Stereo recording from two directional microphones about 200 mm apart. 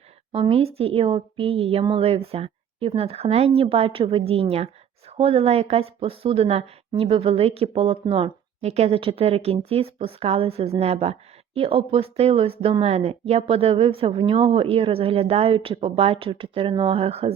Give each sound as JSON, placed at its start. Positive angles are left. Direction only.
{"t": 0.3, "sound": "speech", "side_deg": -25}